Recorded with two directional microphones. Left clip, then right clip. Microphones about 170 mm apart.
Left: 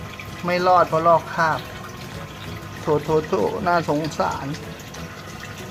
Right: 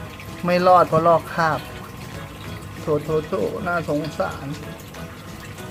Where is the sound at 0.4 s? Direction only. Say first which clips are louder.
Right 2 dB; 15° right (ahead or behind).